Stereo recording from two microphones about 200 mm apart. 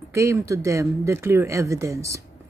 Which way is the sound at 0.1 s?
15° right (ahead or behind).